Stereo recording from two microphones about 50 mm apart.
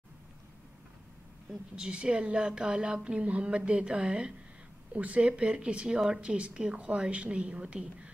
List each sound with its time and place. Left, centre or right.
1.9 s speech: right